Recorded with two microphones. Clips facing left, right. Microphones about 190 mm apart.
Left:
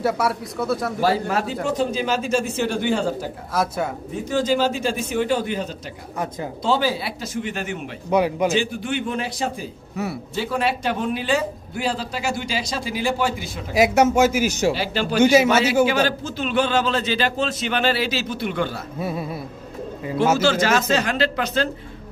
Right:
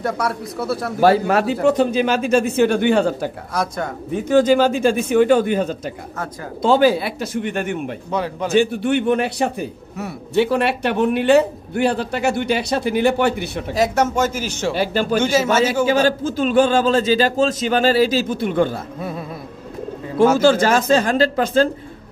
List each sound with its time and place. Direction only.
0.0 s speech: centre (ahead or behind)
1.0 s speech: 65° right (ahead or behind)
3.5 s speech: 5° left (ahead or behind)
4.3 s a man's voice: 55° right (ahead or behind)
8.1 s speech: 10° left (ahead or behind)
8.5 s speech: 65° right (ahead or behind)
13.7 s speech: 10° left (ahead or behind)
14.7 s a man's voice: 50° right (ahead or behind)
15.1 s speech: 15° left (ahead or behind)
15.9 s a man's voice: 40° right (ahead or behind)
18.9 s speech: 5° left (ahead or behind)
20.3 s a man's voice: 50° right (ahead or behind)